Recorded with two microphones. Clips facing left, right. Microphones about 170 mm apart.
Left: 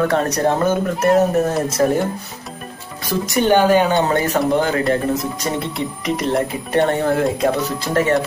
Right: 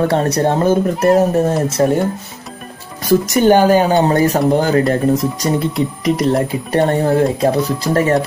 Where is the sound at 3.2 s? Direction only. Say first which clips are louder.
Right 1 dB; 40° right (ahead or behind).